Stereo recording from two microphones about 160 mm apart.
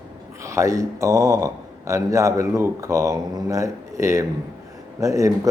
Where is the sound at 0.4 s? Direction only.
20° right (ahead or behind).